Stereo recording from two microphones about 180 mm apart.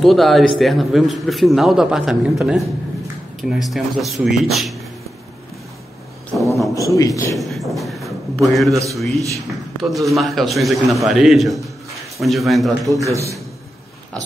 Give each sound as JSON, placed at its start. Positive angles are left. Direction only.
{"t": 0.0, "sound": "a man's voice", "side_deg": 0}
{"t": 6.3, "sound": "a sound", "side_deg": 0}
{"t": 6.7, "sound": "a man's voice", "side_deg": 20}
{"t": 7.3, "sound": "a sound", "side_deg": 0}
{"t": 8.9, "sound": "a man's voice", "side_deg": 0}
{"t": 12.9, "sound": "a man's voice", "side_deg": -15}